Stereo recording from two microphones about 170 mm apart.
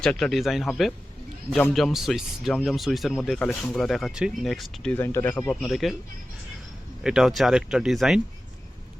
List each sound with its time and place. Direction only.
0.0 s speech: 5° left (ahead or behind)
7.0 s speech: 5° right (ahead or behind)